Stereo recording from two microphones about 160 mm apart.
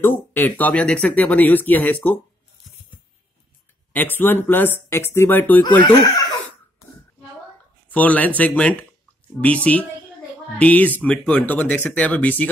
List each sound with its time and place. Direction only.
0.0 s speech: 15° left (ahead or behind)
3.9 s speech: 10° left (ahead or behind)
5.6 s speech: 30° left (ahead or behind)
7.9 s speech: 10° left (ahead or behind)